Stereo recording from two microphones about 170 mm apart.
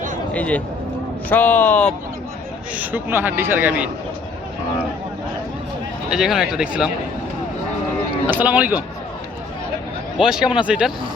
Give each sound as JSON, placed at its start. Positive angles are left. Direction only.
{"t": 0.3, "sound": "speech", "side_deg": 10}
{"t": 2.7, "sound": "a man's voice", "side_deg": -10}
{"t": 6.1, "sound": "speech", "side_deg": -5}
{"t": 8.3, "sound": "a man's voice", "side_deg": -10}
{"t": 10.2, "sound": "speech", "side_deg": -5}